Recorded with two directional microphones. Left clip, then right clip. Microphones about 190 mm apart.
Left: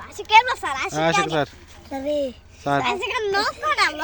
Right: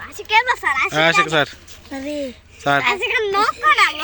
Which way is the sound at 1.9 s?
25° left (ahead or behind).